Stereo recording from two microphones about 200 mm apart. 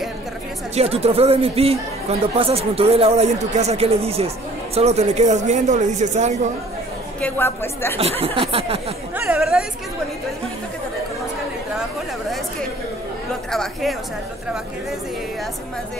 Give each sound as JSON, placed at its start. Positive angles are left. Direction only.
{"t": 0.7, "sound": "speech", "side_deg": -30}
{"t": 7.2, "sound": "a woman's voice", "side_deg": 10}
{"t": 8.2, "sound": "speech", "side_deg": -30}
{"t": 9.1, "sound": "speech", "side_deg": -10}
{"t": 13.5, "sound": "speech", "side_deg": 0}